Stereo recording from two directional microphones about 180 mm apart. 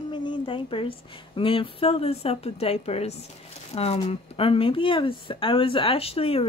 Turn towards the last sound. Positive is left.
turn(degrees=30)  # may be behind; listen again after turning